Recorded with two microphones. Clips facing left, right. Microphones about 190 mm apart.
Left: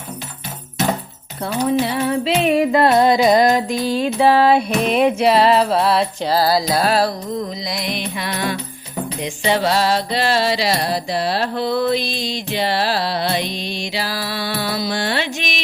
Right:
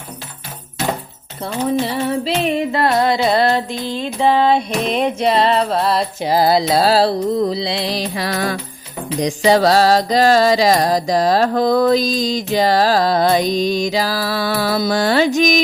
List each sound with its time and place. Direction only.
1.5 s music: 5° left (ahead or behind)
2.7 s music: 20° left (ahead or behind); by 6.1 s centre (ahead or behind)
6.2 s music: 20° right (ahead or behind)
7.3 s music: 70° right (ahead or behind)
7.5 s music: 30° right (ahead or behind)